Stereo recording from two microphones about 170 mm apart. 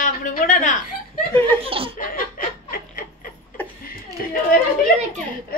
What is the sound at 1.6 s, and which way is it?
Speech, 35° right (ahead or behind).